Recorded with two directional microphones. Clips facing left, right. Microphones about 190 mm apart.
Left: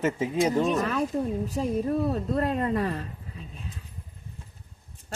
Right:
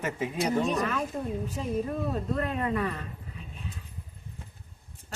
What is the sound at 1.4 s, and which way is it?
Speech, 35° left (ahead or behind).